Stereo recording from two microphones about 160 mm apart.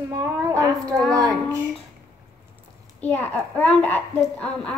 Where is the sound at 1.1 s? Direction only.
20° right (ahead or behind).